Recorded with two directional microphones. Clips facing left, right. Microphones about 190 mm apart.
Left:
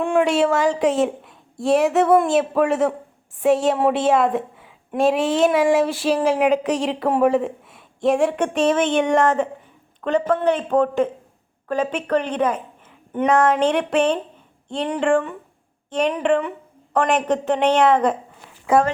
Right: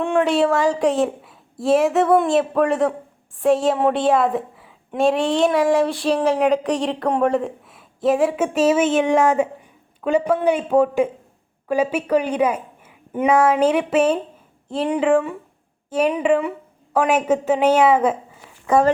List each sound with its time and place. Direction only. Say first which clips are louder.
0.0 s a woman's voice: even; centre (ahead or behind)